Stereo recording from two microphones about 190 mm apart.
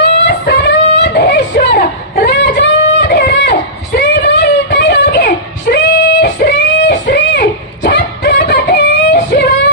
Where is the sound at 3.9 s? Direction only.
60° left (ahead or behind).